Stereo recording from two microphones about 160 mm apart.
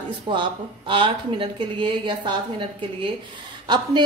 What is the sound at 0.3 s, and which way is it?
A woman's voice, 30° right (ahead or behind).